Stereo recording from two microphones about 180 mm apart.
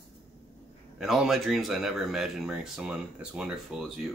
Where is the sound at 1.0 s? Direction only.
Centre (ahead or behind).